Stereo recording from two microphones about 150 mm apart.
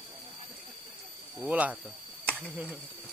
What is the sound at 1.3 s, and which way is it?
Snake, 10° right (ahead or behind).